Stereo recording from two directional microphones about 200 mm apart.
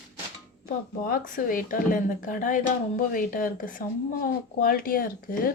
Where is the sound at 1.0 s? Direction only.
45° left (ahead or behind).